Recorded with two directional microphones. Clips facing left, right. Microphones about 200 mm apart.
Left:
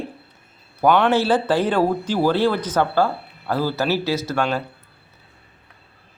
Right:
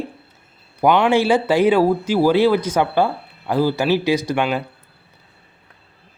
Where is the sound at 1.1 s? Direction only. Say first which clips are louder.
Right 2 dB; 10° right (ahead or behind).